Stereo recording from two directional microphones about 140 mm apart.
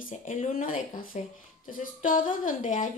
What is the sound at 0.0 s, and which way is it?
Speech, 65° left (ahead or behind).